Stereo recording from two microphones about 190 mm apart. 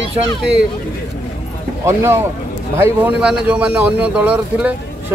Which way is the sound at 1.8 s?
15° right (ahead or behind).